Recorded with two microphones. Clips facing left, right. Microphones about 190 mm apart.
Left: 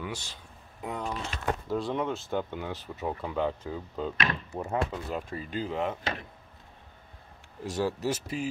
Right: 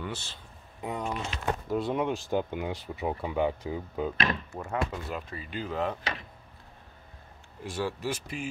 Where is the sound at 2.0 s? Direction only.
15° right (ahead or behind).